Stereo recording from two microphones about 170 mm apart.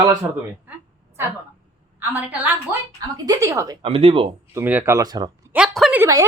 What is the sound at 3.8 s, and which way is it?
Speech, 35° right (ahead or behind).